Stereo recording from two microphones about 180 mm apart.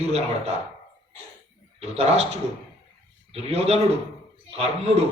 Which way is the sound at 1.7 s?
35° right (ahead or behind).